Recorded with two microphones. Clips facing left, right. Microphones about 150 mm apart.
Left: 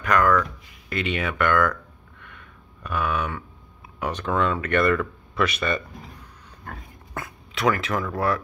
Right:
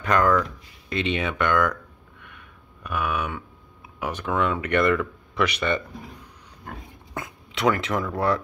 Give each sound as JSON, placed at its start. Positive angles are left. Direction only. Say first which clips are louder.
{"t": 0.0, "sound": "speech", "louder": "even", "side_deg": -25}
{"t": 2.2, "sound": "a sound", "louder": "left 2 dB", "side_deg": -15}
{"t": 4.0, "sound": "speech", "louder": "left 1 dB", "side_deg": -10}
{"t": 6.6, "sound": "pig", "louder": "right 1 dB", "side_deg": -15}